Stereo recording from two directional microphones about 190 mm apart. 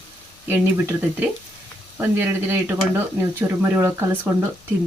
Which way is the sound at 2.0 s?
10° right (ahead or behind).